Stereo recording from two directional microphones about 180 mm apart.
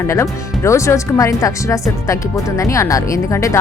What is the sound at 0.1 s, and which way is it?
Speech, 15° left (ahead or behind).